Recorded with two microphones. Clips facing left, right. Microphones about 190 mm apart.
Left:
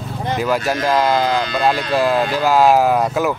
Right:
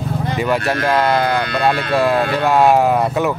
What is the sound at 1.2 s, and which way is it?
Speech, 60° right (ahead or behind).